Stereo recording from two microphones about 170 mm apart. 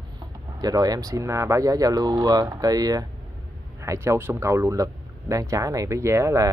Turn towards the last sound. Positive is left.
turn(degrees=-15)  # may be behind; listen again after turning